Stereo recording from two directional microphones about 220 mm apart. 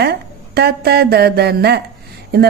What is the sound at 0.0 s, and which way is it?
A woman's voice, 45° right (ahead or behind).